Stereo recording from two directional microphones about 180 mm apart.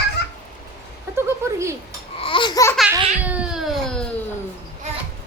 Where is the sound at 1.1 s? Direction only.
15° right (ahead or behind).